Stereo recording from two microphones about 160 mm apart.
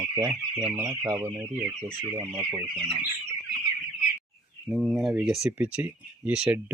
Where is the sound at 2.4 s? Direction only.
20° right (ahead or behind).